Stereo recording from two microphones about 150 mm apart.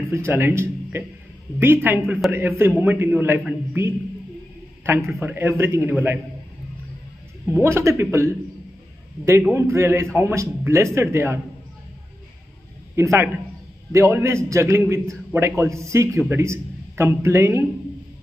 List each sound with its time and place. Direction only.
0.1 s a man's voice: 15° right (ahead or behind)
7.4 s a man's voice: 15° right (ahead or behind)
9.5 s a man's voice: 15° right (ahead or behind)
12.9 s a man's voice: 20° right (ahead or behind)